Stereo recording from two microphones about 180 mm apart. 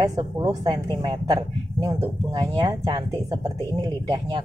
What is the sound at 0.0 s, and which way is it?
A woman's voice, 20° right (ahead or behind).